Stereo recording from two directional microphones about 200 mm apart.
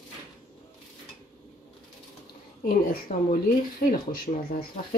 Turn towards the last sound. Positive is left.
turn(degrees=45)  # may be behind; listen again after turning